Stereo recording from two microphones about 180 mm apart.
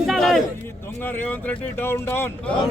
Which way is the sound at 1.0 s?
10° left (ahead or behind).